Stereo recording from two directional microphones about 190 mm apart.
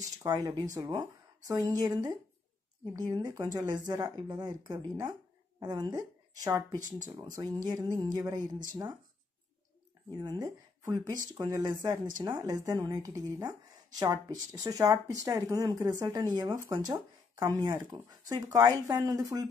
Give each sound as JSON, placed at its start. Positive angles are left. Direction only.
{"t": 0.2, "sound": "a woman's voice", "side_deg": -20}
{"t": 10.1, "sound": "speech", "side_deg": -20}